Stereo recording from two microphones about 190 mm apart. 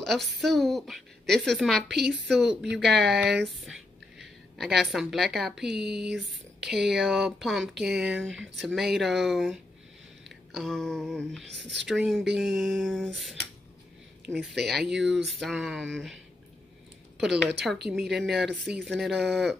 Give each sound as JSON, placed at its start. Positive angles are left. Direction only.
{"t": 0.4, "sound": "speech", "side_deg": 0}
{"t": 1.9, "sound": "a sound", "side_deg": -60}
{"t": 2.2, "sound": "a woman's voice", "side_deg": 0}
{"t": 5.8, "sound": "a sound", "side_deg": -60}
{"t": 6.9, "sound": "speech", "side_deg": 0}
{"t": 17.2, "sound": "speech", "side_deg": 0}